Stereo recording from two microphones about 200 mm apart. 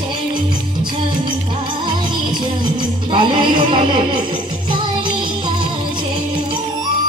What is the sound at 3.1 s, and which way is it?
Music, 25° right (ahead or behind).